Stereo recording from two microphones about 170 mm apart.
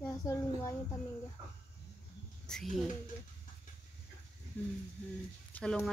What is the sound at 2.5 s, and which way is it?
Speech, 5° left (ahead or behind).